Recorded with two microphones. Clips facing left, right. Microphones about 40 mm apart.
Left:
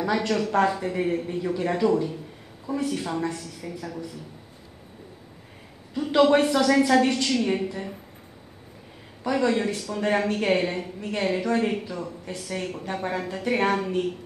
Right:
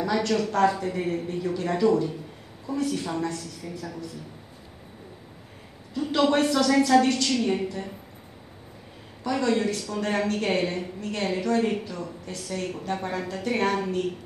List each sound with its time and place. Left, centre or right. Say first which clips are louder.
0.0 s a man's voice: even; centre
5.9 s a woman's voice: left 3 dB; centre
9.2 s a woman's voice: left 1 dB; centre